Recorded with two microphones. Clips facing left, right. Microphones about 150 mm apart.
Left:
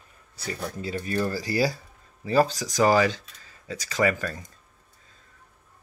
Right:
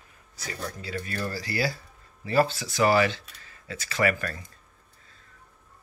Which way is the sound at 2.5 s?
40° left (ahead or behind).